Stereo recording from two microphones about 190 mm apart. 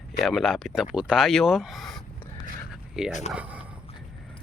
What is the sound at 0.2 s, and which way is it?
Speech, centre (ahead or behind).